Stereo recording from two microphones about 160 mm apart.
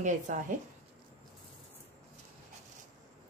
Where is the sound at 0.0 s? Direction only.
55° right (ahead or behind).